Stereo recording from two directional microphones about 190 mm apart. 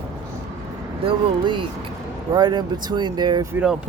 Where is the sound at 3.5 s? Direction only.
5° right (ahead or behind).